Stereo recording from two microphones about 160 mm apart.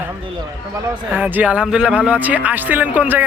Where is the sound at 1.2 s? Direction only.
10° right (ahead or behind).